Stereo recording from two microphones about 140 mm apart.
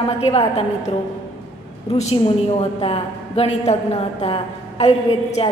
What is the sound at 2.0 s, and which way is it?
A woman's voice, 50° left (ahead or behind).